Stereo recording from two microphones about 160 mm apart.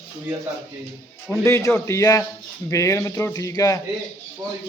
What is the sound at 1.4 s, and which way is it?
Speech, 15° left (ahead or behind).